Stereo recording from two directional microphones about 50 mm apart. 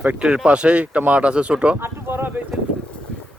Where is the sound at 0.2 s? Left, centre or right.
Centre.